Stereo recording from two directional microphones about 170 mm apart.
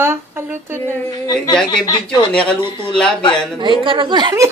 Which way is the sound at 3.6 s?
30° right (ahead or behind).